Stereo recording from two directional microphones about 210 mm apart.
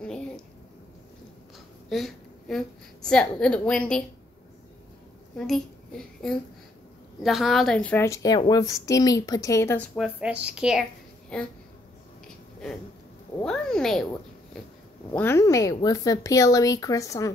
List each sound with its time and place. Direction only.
1.9 s a woman's voice: centre (ahead or behind)
5.5 s a child's voice: centre (ahead or behind)
9.9 s a woman's voice: 5° right (ahead or behind)
13.4 s speech: 5° left (ahead or behind)
15.1 s a woman's voice: 10° left (ahead or behind)